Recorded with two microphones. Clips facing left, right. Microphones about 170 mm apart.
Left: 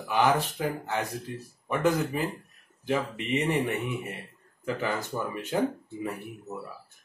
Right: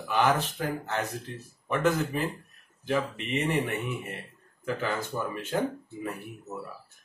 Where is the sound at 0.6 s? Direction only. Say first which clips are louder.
Left 1 dB; 15° left (ahead or behind).